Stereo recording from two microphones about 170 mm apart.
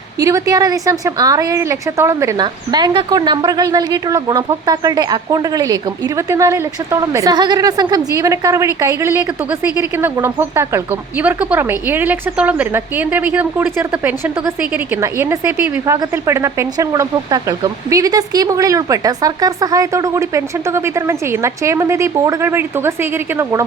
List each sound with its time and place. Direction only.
0.2 s a woman's voice: 20° right (ahead or behind)